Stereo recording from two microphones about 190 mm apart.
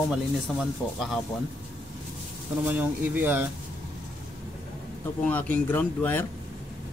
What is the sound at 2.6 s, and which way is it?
Speech, 10° right (ahead or behind).